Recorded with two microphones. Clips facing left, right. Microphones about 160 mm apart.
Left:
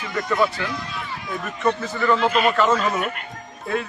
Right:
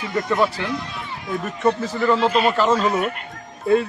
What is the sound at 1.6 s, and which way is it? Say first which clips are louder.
Speech: right 2 dB; 35° right (ahead or behind).